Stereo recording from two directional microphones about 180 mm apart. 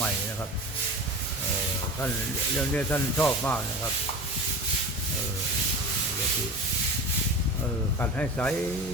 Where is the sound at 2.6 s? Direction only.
10° left (ahead or behind).